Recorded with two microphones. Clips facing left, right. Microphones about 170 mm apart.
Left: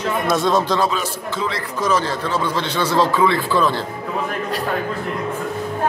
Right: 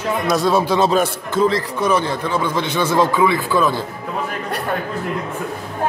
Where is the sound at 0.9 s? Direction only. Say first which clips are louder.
Right 7 dB; 50° right (ahead or behind).